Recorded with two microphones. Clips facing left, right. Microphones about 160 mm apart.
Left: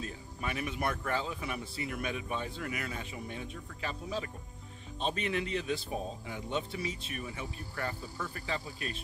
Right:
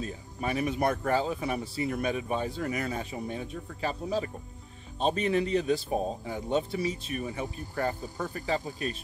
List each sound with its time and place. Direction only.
0.0 s speech: 35° right (ahead or behind)